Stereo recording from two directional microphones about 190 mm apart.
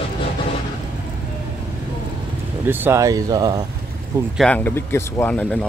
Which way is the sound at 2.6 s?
10° right (ahead or behind).